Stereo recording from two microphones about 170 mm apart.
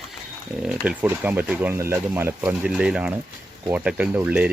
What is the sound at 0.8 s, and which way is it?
Speech, 10° right (ahead or behind).